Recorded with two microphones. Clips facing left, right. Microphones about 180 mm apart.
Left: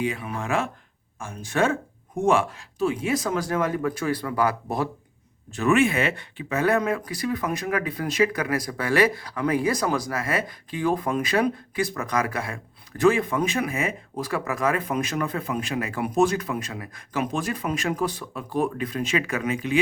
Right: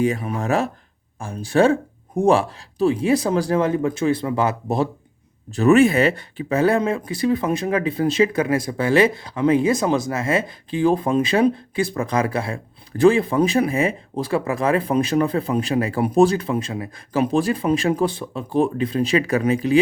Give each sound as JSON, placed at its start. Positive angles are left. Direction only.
{"t": 0.0, "sound": "speech", "side_deg": -40}
{"t": 5.5, "sound": "speech", "side_deg": -35}